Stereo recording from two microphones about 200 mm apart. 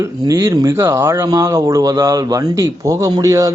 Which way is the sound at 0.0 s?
15° right (ahead or behind).